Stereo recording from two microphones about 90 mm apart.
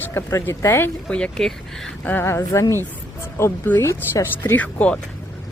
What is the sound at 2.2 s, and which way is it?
Speech, 35° left (ahead or behind).